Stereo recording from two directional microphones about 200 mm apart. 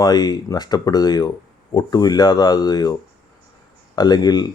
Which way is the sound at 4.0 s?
20° left (ahead or behind).